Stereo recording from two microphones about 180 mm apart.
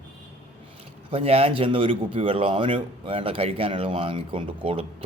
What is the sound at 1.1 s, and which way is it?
Speech, 35° right (ahead or behind).